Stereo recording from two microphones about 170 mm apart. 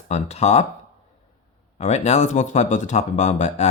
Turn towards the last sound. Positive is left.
turn(degrees=40)  # may be behind; listen again after turning